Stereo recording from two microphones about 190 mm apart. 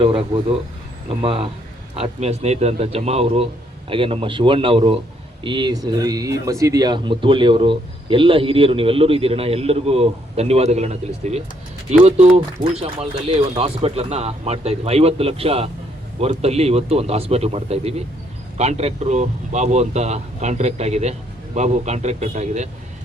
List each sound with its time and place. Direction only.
0.0 s speech: 30° right (ahead or behind)